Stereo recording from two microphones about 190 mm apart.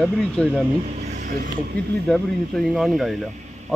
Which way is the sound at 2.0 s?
Centre (ahead or behind).